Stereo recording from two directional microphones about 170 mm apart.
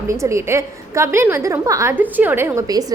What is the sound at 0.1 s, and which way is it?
A woman's voice, 15° right (ahead or behind).